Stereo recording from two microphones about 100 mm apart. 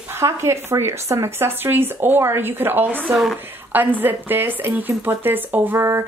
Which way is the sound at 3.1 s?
Centre (ahead or behind).